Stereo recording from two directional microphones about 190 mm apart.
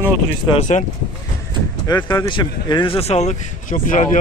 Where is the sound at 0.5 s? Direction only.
35° left (ahead or behind).